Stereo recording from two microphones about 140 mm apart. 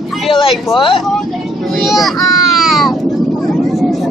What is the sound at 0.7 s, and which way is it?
Speech, 35° left (ahead or behind).